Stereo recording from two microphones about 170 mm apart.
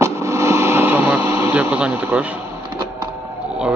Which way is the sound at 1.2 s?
35° left (ahead or behind).